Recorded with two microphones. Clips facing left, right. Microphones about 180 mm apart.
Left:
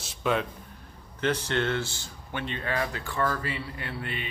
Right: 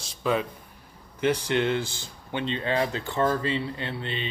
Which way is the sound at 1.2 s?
10° right (ahead or behind).